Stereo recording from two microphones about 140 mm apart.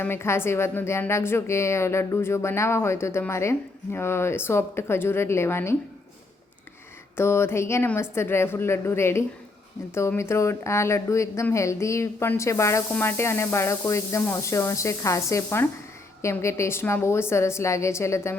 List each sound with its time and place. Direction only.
0.0 s a woman's voice: 15° left (ahead or behind)
7.2 s a woman's voice: 20° left (ahead or behind)